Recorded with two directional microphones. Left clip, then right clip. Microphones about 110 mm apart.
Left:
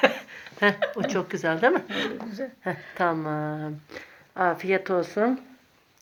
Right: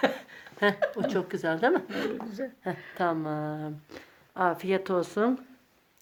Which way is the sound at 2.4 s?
40° right (ahead or behind).